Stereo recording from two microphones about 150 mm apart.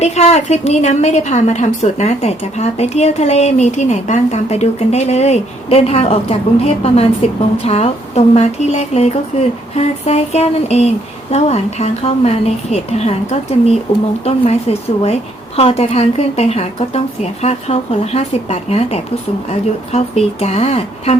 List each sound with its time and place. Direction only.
0.0 s a woman's voice: 45° left (ahead or behind)